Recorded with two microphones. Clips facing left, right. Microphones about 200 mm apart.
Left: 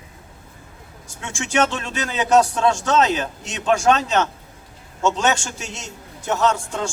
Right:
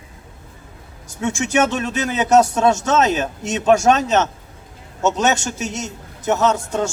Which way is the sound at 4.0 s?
20° right (ahead or behind).